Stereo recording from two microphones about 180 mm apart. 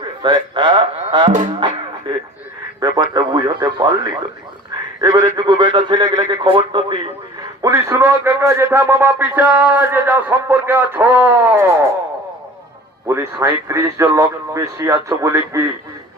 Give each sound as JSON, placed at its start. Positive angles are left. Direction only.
{"t": 0.0, "sound": "speech", "side_deg": -25}
{"t": 1.5, "sound": "music", "side_deg": -25}
{"t": 2.8, "sound": "a man's voice", "side_deg": -20}
{"t": 7.6, "sound": "a man's voice", "side_deg": -15}
{"t": 13.1, "sound": "a man's voice", "side_deg": -15}